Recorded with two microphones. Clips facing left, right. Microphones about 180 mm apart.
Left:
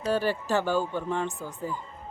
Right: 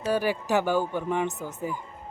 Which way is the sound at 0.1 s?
15° right (ahead or behind).